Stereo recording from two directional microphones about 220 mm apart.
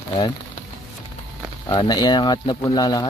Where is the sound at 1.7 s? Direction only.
20° left (ahead or behind).